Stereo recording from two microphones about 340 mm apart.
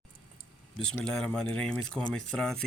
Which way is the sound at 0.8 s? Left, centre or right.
Centre.